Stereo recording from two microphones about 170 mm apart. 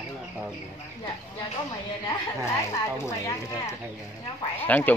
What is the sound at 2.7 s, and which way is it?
Speech, 20° left (ahead or behind).